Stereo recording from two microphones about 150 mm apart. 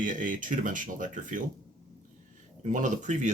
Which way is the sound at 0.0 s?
60° right (ahead or behind).